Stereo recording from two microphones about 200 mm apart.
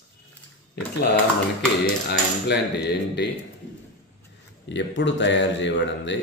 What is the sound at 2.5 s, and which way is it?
Speech, 55° left (ahead or behind).